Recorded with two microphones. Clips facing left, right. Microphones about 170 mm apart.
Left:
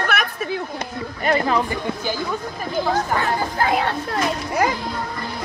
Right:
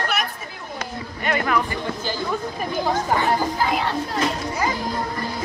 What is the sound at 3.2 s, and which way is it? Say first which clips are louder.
Speech: right 1 dB; 65° left (ahead or behind).